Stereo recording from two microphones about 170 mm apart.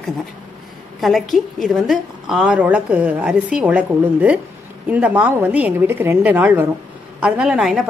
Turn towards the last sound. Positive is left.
turn(degrees=-5)  # may be behind; listen again after turning